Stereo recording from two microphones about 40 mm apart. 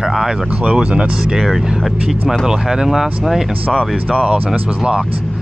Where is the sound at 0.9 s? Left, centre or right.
Centre.